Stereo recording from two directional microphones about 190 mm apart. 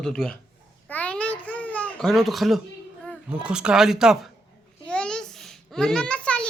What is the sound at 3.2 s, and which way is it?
A man's voice, 5° right (ahead or behind).